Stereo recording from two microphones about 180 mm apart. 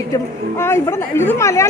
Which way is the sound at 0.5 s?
15° left (ahead or behind).